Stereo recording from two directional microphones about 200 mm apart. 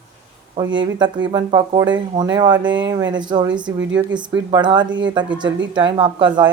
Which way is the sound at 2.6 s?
65° right (ahead or behind).